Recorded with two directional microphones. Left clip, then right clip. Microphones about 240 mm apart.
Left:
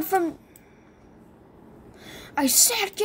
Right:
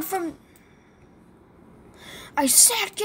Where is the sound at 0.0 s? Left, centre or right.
Centre.